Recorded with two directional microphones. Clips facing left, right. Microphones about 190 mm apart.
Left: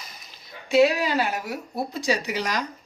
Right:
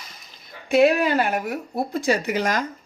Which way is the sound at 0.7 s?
55° right (ahead or behind).